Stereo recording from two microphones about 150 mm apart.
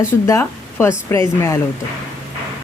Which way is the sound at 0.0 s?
15° left (ahead or behind).